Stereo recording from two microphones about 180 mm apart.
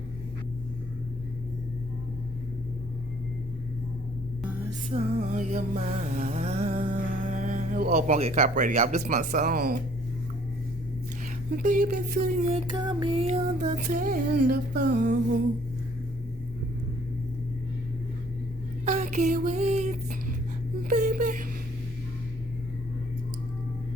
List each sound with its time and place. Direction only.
4.9 s music: 40° right (ahead or behind)
11.5 s music: 45° right (ahead or behind)
12.5 s music: 30° right (ahead or behind)
13.7 s music: 50° right (ahead or behind)
18.9 s a sound: 40° right (ahead or behind)
20.9 s whimper: 45° right (ahead or behind)